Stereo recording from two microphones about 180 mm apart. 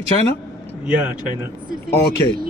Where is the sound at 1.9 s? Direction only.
65° left (ahead or behind).